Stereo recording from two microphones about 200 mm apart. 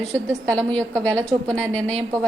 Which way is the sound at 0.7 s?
30° right (ahead or behind).